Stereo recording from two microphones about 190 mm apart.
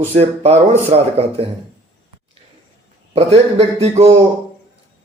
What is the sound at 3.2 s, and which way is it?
Speech, 35° right (ahead or behind).